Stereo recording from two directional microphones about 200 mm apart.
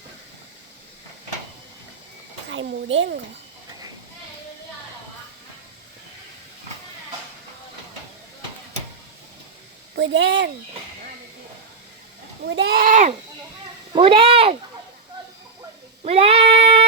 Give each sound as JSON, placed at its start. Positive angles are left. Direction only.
{"t": 2.5, "sound": "speech", "side_deg": -75}
{"t": 9.9, "sound": "speech", "side_deg": -65}
{"t": 12.4, "sound": "speech", "side_deg": -60}
{"t": 13.9, "sound": "meow", "side_deg": -25}
{"t": 16.0, "sound": "meow", "side_deg": -30}